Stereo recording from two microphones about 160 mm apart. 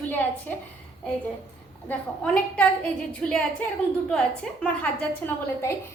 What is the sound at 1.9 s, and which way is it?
A woman's voice, 5° left (ahead or behind).